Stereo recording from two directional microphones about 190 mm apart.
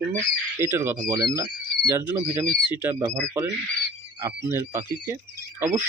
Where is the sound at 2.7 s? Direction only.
10° right (ahead or behind).